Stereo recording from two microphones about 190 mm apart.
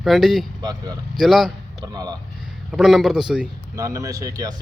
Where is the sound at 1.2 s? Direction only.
Centre (ahead or behind).